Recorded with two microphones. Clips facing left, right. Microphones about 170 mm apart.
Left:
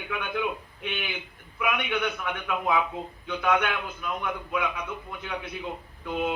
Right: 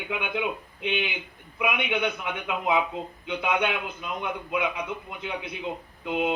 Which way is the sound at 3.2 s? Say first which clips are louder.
Left 1 dB; 20° right (ahead or behind).